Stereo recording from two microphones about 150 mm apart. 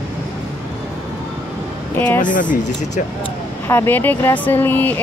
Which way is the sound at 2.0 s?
10° left (ahead or behind).